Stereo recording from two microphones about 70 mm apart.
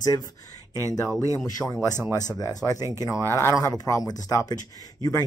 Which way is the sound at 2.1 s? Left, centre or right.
Left.